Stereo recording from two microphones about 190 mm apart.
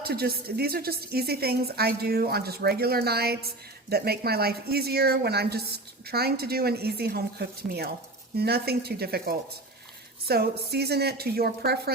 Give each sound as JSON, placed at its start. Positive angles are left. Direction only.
{"t": 0.0, "sound": "a woman's voice", "side_deg": -55}